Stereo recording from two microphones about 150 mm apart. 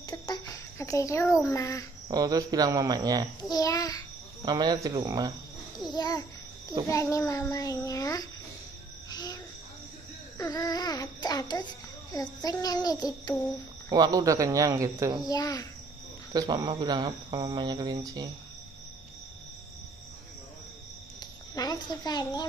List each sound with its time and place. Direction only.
0.0 s a sound: 25° left (ahead or behind)
2.0 s speech: 25° right (ahead or behind)
3.3 s a child's voice: 25° left (ahead or behind)
4.5 s speech: 25° right (ahead or behind)
5.9 s a child's voice: 25° left (ahead or behind)
9.1 s a sound: 25° left (ahead or behind)
10.3 s a child's voice: 25° left (ahead or behind)
13.8 s speech: 25° right (ahead or behind)
15.2 s a child's voice: 25° left (ahead or behind)
16.3 s speech: 30° right (ahead or behind)
21.2 s a child's voice: 25° left (ahead or behind)